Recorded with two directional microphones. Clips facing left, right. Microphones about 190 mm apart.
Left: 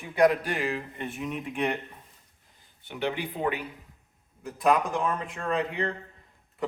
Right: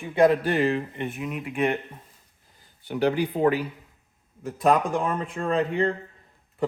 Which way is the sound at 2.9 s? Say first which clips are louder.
Right 7 dB; 35° right (ahead or behind).